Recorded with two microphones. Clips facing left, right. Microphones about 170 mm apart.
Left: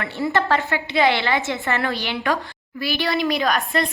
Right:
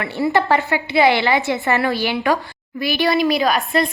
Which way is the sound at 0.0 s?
15° right (ahead or behind).